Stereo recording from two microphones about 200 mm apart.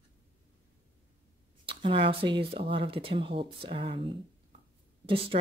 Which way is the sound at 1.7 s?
25° right (ahead or behind).